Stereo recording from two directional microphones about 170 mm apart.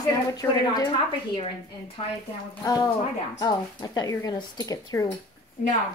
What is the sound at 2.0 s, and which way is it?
Speech, 35° left (ahead or behind).